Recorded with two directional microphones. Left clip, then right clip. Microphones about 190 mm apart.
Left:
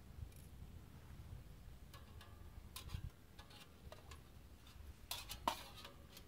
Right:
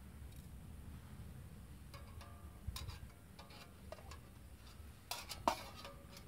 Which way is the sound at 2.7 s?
5° right (ahead or behind).